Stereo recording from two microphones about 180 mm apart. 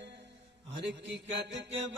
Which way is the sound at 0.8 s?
80° right.